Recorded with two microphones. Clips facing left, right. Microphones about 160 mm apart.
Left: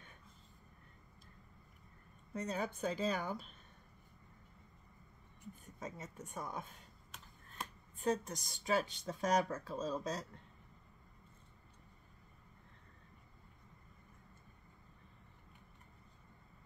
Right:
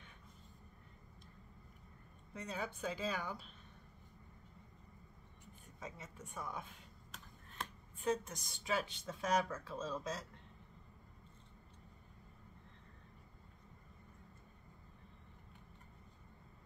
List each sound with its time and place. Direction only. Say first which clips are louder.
2.3 s speech: left 4 dB; 45° left (ahead or behind)
5.8 s speech: left 3 dB; 40° left (ahead or behind)
8.0 s speech: left 2 dB; 40° left (ahead or behind)